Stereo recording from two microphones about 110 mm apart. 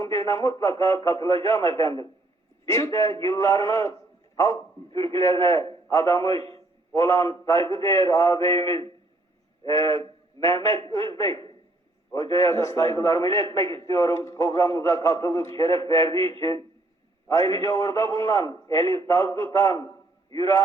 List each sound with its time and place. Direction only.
0.0 s a man's voice: 30° left (ahead or behind)
12.2 s a man's voice: 30° left (ahead or behind)